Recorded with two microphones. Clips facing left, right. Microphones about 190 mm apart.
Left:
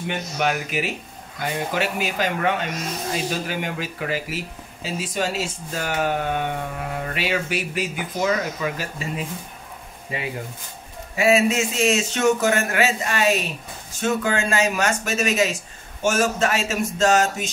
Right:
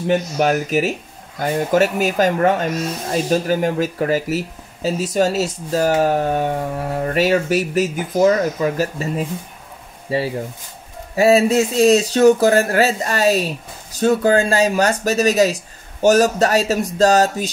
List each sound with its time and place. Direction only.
0.0 s speech: 40° right (ahead or behind)